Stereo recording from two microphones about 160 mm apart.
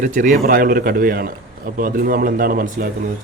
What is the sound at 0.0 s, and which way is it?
Speech, 55° right (ahead or behind).